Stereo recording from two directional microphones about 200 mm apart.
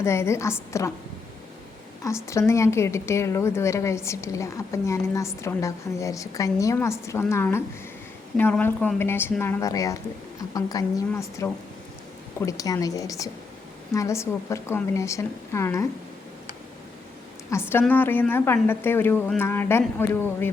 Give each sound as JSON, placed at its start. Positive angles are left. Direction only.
{"t": 0.0, "sound": "a woman's voice", "side_deg": 15}
{"t": 2.0, "sound": "a woman's voice", "side_deg": 15}
{"t": 17.5, "sound": "a woman's voice", "side_deg": 10}